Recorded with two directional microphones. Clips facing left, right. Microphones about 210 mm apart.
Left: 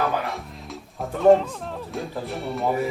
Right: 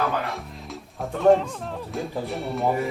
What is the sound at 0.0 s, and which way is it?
Speech, centre (ahead or behind).